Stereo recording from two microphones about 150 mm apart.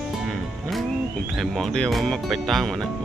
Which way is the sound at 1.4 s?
5° left (ahead or behind).